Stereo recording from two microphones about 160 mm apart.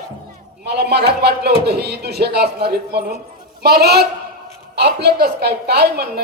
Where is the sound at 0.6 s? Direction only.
90° right.